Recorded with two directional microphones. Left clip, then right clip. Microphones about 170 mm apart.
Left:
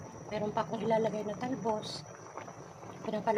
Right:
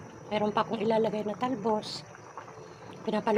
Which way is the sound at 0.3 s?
30° right (ahead or behind).